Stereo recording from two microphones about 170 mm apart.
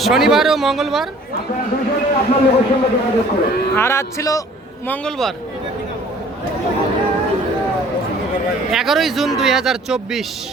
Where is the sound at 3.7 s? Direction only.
15° left (ahead or behind).